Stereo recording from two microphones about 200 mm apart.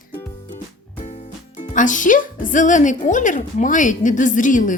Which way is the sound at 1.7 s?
40° left (ahead or behind).